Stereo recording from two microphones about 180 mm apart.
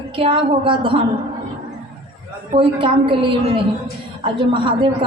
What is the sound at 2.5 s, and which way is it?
Speech, 30° right (ahead or behind).